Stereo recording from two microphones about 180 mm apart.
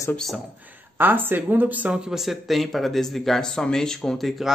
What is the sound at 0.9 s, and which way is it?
Speech, 10° right (ahead or behind).